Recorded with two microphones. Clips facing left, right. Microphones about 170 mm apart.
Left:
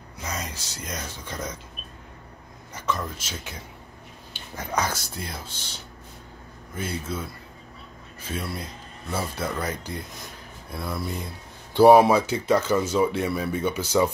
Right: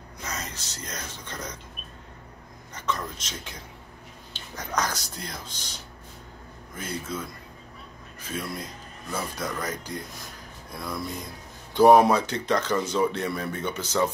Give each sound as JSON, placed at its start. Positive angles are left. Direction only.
{"t": 0.2, "sound": "speech", "side_deg": 10}
{"t": 2.7, "sound": "speech", "side_deg": 10}
{"t": 4.3, "sound": "dog", "side_deg": 10}
{"t": 4.9, "sound": "speech", "side_deg": 50}
{"t": 6.8, "sound": "speech", "side_deg": 10}